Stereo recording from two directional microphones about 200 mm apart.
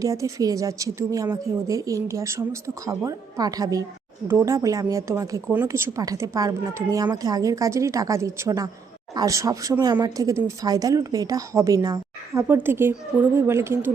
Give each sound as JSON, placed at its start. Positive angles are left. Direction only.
{"t": 0.0, "sound": "speech", "side_deg": -15}